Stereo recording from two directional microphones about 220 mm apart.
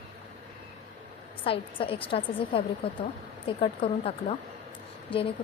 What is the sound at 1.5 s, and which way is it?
A woman's voice, 25° left (ahead or behind).